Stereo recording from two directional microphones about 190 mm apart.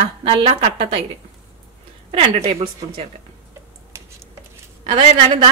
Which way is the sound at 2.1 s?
30° right (ahead or behind).